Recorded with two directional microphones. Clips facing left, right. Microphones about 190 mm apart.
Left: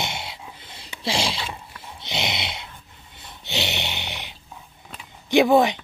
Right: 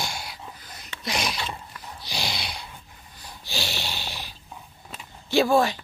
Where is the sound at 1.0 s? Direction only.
30° left (ahead or behind).